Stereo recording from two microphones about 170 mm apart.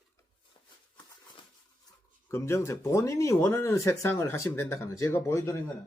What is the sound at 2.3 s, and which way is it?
Speech, 15° left (ahead or behind).